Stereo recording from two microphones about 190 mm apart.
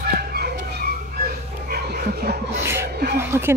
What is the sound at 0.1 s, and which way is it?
Chicken, 55° right (ahead or behind).